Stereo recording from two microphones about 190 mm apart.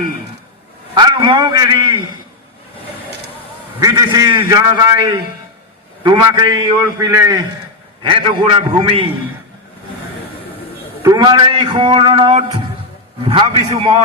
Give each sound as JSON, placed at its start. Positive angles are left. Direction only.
{"t": 0.9, "sound": "a man's voice", "side_deg": -25}
{"t": 3.8, "sound": "a man's voice", "side_deg": -20}
{"t": 8.0, "sound": "a man's voice", "side_deg": -25}
{"t": 11.0, "sound": "a man's voice", "side_deg": -20}